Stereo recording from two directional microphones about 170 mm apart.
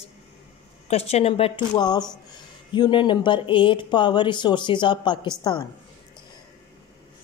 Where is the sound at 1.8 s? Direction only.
25° left (ahead or behind).